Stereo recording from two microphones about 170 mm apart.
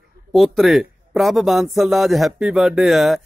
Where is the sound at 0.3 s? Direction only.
Centre (ahead or behind).